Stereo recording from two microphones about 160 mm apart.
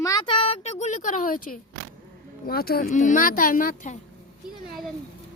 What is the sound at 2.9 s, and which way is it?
Speech, 50° left (ahead or behind).